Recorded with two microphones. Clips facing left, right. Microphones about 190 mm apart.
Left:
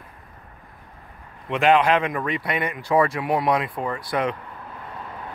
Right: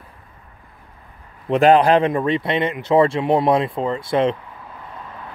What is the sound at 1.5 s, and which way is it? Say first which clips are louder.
Speech: right 5 dB; 35° right (ahead or behind).